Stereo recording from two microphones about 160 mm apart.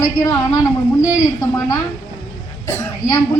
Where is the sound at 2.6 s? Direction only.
20° left (ahead or behind).